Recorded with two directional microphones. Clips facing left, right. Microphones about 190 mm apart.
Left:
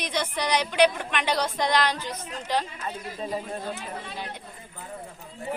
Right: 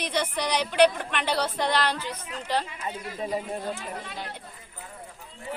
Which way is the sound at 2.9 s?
15° right (ahead or behind).